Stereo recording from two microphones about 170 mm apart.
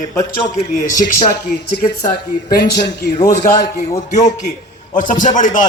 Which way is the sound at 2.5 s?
75° left (ahead or behind).